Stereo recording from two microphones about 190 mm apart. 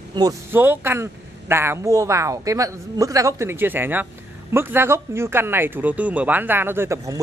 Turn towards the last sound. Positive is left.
turn(degrees=-15)  # may be behind; listen again after turning